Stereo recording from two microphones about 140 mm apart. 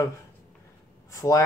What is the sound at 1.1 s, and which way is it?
Speech, 25° left (ahead or behind).